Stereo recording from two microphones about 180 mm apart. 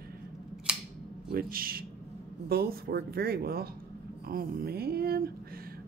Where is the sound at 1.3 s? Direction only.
55° right (ahead or behind).